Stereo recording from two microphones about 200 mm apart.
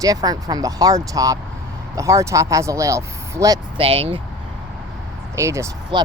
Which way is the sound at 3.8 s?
30° right (ahead or behind).